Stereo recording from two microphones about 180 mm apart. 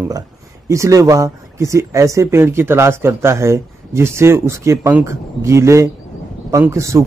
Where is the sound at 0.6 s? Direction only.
15° right (ahead or behind).